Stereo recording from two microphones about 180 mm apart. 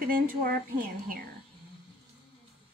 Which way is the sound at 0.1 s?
50° right (ahead or behind).